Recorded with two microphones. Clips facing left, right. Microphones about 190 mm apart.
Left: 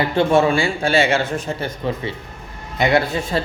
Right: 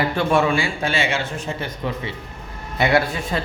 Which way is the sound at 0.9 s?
45° left (ahead or behind).